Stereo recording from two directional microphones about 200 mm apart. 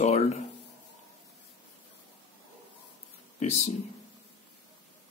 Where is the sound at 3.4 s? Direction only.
35° left (ahead or behind).